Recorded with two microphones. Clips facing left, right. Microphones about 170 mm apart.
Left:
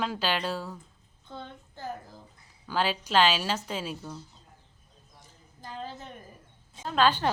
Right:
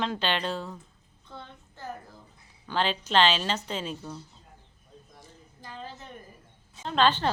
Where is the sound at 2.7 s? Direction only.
5° left (ahead or behind).